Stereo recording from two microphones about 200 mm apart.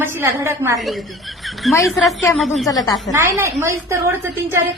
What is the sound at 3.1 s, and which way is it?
Speech, 10° right (ahead or behind).